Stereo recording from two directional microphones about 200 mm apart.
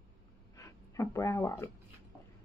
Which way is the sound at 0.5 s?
15° left (ahead or behind).